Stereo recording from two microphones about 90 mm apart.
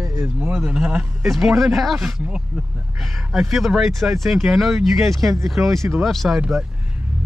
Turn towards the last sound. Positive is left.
turn(degrees=-5)  # may be behind; listen again after turning